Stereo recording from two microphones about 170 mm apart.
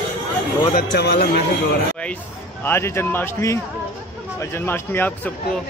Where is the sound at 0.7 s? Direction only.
75° left (ahead or behind).